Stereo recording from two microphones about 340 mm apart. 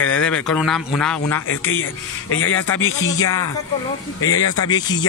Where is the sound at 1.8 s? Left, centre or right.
Left.